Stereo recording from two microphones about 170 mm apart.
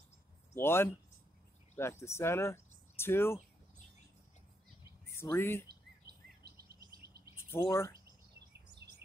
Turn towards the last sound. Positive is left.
turn(degrees=15)  # may be behind; listen again after turning